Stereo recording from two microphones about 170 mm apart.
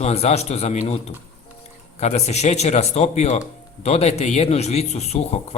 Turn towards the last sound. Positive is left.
turn(degrees=40)  # may be behind; listen again after turning